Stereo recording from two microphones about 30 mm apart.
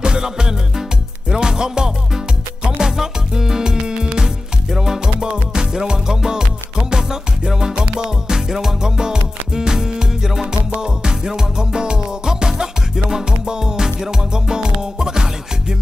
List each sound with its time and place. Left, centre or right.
0.0 s music: right
5.0 s music: right